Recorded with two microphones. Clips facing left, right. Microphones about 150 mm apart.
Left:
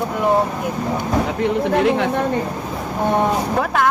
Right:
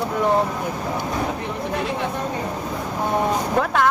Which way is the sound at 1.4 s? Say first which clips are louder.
Left 9 dB; 75° left (ahead or behind).